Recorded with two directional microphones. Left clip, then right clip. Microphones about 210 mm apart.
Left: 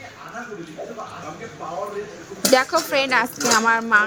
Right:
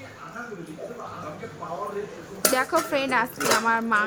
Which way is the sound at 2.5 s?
35° left (ahead or behind).